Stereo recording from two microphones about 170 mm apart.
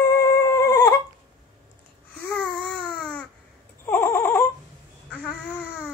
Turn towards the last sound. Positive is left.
turn(degrees=5)  # may be behind; listen again after turning